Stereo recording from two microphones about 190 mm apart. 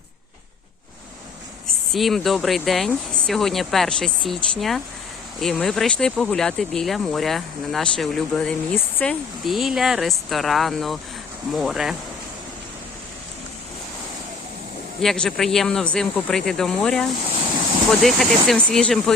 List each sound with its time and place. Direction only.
1.6 s speech: centre (ahead or behind)
15.0 s speech: centre (ahead or behind)